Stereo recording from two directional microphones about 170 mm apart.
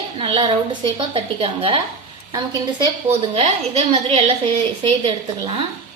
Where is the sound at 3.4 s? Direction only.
35° right (ahead or behind).